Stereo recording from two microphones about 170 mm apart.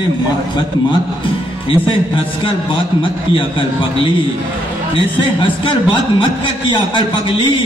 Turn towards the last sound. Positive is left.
turn(degrees=30)  # may be behind; listen again after turning